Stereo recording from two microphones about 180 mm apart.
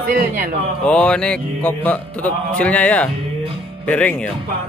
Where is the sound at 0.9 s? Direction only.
5° left (ahead or behind).